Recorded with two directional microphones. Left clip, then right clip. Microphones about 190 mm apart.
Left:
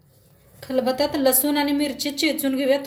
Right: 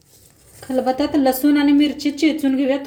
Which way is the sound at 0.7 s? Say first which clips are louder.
Right 3 dB; 40° right (ahead or behind).